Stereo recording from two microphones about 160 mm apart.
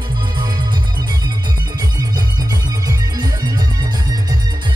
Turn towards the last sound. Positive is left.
turn(degrees=-25)  # may be behind; listen again after turning